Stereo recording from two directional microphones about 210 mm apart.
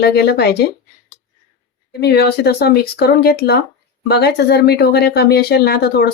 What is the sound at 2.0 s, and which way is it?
Speech, 50° left (ahead or behind).